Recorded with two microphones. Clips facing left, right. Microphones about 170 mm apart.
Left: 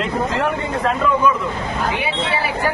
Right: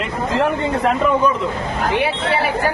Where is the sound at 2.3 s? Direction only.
55° right (ahead or behind).